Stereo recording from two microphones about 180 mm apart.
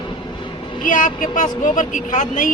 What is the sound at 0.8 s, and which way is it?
Speech, 45° left (ahead or behind).